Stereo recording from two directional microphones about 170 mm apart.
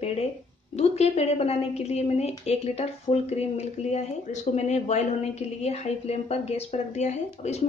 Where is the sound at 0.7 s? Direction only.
40° left (ahead or behind).